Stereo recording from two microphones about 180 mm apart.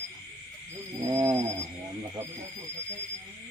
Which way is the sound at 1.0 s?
15° right (ahead or behind).